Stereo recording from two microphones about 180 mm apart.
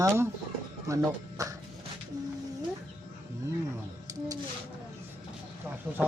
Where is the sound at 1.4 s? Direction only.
20° right (ahead or behind).